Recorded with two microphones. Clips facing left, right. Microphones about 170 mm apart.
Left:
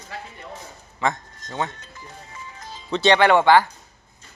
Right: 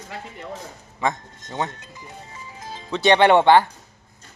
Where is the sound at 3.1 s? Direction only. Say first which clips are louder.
Right 2 dB; 25° right (ahead or behind).